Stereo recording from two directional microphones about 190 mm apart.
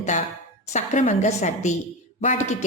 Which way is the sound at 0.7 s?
40° left (ahead or behind).